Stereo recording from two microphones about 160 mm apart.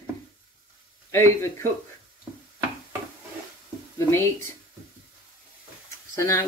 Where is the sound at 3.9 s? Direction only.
15° left (ahead or behind).